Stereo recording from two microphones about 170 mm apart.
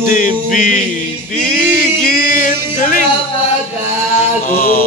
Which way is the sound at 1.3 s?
60° left (ahead or behind).